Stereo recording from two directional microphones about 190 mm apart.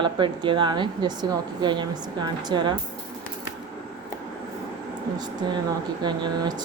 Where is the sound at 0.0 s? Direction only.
25° right (ahead or behind).